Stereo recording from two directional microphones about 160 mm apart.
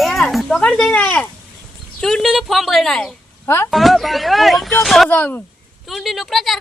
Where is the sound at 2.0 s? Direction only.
Centre (ahead or behind).